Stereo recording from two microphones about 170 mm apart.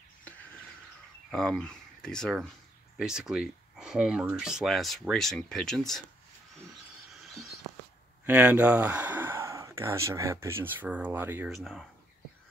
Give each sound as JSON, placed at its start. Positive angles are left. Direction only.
{"t": 1.3, "sound": "speech", "side_deg": 5}
{"t": 8.3, "sound": "speech", "side_deg": -10}
{"t": 11.5, "sound": "speech", "side_deg": 0}